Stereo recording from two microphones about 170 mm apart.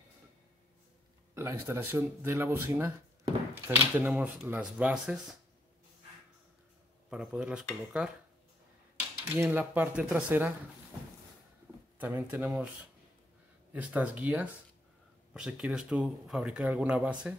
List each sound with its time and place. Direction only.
1.3 s speech: 15° right (ahead or behind)
7.1 s speech: 5° right (ahead or behind)
9.2 s speech: 15° right (ahead or behind)
12.0 s speech: 10° right (ahead or behind)
13.7 s speech: 10° right (ahead or behind)